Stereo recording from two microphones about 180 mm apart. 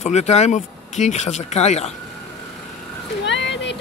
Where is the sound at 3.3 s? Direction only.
80° left.